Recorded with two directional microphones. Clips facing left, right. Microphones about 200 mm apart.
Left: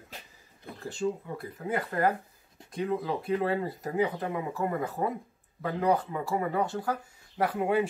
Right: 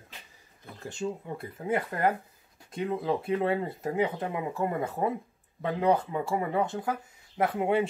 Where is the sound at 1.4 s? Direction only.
25° right (ahead or behind).